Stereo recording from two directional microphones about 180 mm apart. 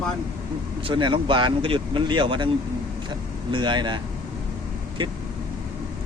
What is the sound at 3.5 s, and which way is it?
Speech, 25° right (ahead or behind).